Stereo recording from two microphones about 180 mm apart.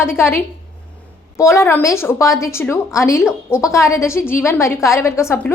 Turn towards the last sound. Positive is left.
turn(degrees=10)  # may be behind; listen again after turning